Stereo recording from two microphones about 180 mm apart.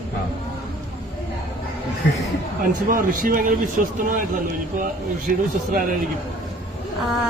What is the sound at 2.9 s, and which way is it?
Speech, 50° right (ahead or behind).